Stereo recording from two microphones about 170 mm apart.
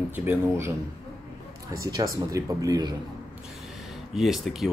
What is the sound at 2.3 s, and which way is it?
Speech, 20° right (ahead or behind).